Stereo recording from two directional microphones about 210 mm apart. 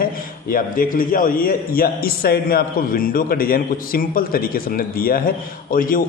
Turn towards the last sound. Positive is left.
turn(degrees=40)  # may be behind; listen again after turning